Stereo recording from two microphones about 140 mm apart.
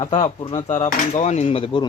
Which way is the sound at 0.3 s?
35° left (ahead or behind).